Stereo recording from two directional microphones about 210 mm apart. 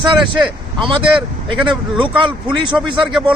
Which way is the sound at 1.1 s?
5° right (ahead or behind).